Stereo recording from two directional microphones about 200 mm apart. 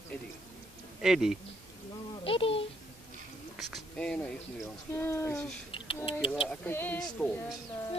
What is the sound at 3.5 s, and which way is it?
Speech, centre (ahead or behind).